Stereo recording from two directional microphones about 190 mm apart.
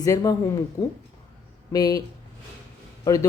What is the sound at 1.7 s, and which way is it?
Speech, 20° left (ahead or behind).